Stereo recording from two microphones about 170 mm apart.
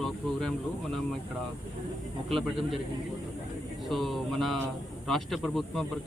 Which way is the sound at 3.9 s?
Centre (ahead or behind).